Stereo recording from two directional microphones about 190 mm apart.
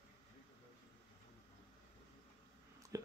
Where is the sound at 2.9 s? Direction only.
15° right (ahead or behind).